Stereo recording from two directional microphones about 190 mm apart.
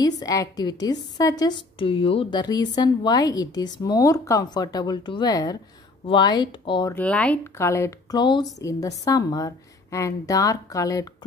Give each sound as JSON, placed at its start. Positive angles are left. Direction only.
{"t": 0.0, "sound": "a woman's voice", "side_deg": 20}
{"t": 6.9, "sound": "speech", "side_deg": 10}